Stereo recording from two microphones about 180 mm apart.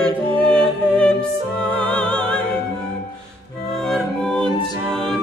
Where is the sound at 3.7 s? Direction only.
Centre (ahead or behind).